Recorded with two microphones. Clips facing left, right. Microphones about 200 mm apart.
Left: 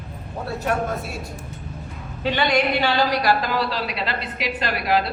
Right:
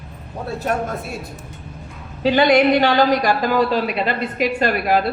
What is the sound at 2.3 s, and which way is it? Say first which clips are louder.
A woman's voice: right 7 dB; 40° right (ahead or behind).